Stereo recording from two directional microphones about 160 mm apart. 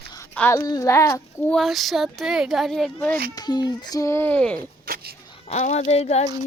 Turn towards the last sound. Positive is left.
turn(degrees=40)  # may be behind; listen again after turning